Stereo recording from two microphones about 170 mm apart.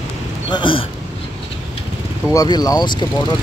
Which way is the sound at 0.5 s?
30° left (ahead or behind).